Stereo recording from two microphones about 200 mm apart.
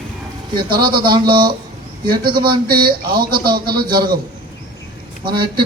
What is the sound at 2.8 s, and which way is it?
Speech, 50° right (ahead or behind).